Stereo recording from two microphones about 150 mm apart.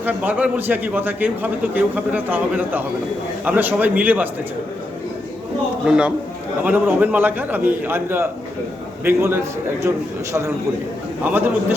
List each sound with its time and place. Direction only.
0.0 s a man's voice: 10° right (ahead or behind)
5.8 s a man's voice: 5° right (ahead or behind)
11.2 s a man's voice: 10° right (ahead or behind)